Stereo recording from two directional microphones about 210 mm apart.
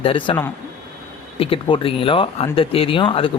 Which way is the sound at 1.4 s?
25° left (ahead or behind).